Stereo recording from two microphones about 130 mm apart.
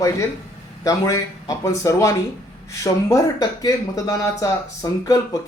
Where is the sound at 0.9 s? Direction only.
25° left (ahead or behind).